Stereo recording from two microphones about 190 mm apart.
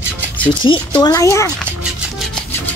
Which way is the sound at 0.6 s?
25° left (ahead or behind).